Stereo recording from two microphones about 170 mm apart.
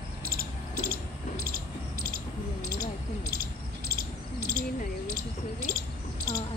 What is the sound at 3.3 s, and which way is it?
Cricket, 60° right (ahead or behind).